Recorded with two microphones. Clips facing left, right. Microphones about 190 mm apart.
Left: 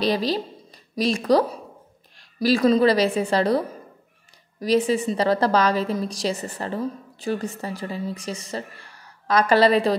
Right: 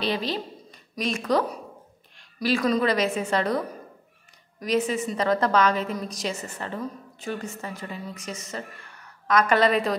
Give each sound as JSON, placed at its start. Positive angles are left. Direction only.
{"t": 0.0, "sound": "a woman's voice", "side_deg": 40}